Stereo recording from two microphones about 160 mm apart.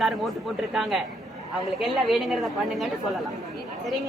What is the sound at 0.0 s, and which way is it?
A woman's voice, centre (ahead or behind).